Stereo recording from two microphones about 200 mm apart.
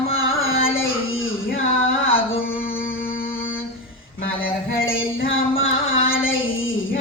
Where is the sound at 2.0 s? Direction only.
85° left.